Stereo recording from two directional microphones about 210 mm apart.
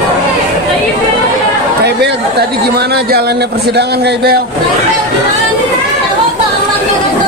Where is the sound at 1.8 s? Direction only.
50° right (ahead or behind).